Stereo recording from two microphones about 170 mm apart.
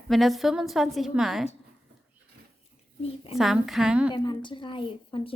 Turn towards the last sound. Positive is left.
turn(degrees=30)  # may be behind; listen again after turning